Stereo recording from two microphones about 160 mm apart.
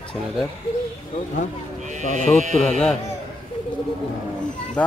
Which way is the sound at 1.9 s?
50° right (ahead or behind).